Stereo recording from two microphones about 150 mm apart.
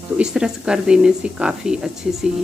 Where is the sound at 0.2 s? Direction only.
5° right (ahead or behind).